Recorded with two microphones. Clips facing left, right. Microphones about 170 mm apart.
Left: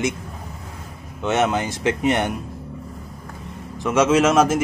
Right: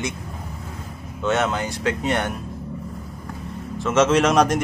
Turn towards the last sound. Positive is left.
turn(degrees=5)  # may be behind; listen again after turning